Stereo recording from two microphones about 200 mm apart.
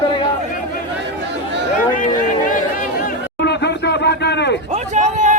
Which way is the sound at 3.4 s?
60° left (ahead or behind).